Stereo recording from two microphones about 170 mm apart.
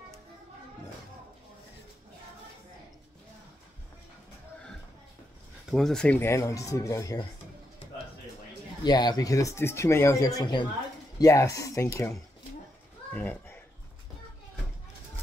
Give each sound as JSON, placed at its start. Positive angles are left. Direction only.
{"t": 5.7, "sound": "speech", "side_deg": 0}
{"t": 8.8, "sound": "speech", "side_deg": 25}
{"t": 13.1, "sound": "a child's voice", "side_deg": 10}